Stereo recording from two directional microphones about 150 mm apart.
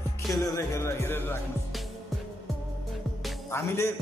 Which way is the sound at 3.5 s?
15° left (ahead or behind).